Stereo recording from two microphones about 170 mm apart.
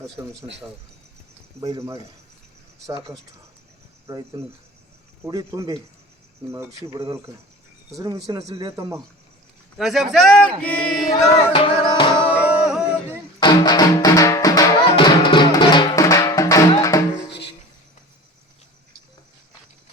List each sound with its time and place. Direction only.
1.6 s speech: 20° right (ahead or behind)
4.0 s speech: 20° right (ahead or behind)
9.7 s speech: centre (ahead or behind)
10.6 s chant: 10° left (ahead or behind)
11.5 s music: 30° left (ahead or behind)
12.5 s a sound: 5° right (ahead or behind)
13.4 s music: 25° left (ahead or behind)